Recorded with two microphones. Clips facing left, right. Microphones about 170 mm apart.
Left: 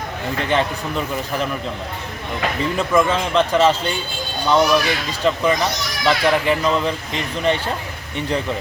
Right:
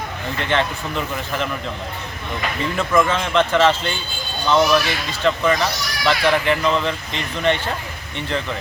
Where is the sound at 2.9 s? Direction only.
5° left (ahead or behind).